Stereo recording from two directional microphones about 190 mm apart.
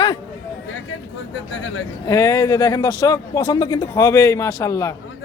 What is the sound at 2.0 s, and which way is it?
Speech, 15° left (ahead or behind).